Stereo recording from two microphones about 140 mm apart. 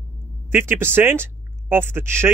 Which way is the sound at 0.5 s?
15° right (ahead or behind).